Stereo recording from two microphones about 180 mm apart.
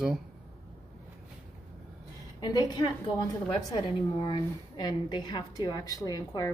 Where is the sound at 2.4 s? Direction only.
25° left (ahead or behind).